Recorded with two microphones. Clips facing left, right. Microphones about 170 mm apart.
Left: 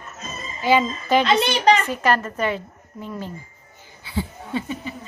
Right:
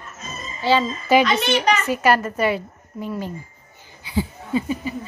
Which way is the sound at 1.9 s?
10° right (ahead or behind).